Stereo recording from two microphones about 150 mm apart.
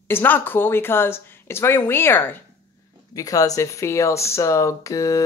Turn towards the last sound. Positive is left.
turn(degrees=20)  # may be behind; listen again after turning